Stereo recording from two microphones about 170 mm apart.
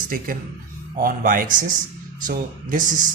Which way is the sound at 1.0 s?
55° right (ahead or behind).